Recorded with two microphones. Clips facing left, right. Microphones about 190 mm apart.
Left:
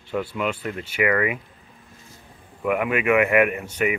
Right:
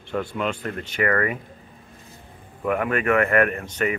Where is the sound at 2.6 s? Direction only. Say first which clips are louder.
Left 1 dB; 10° left (ahead or behind).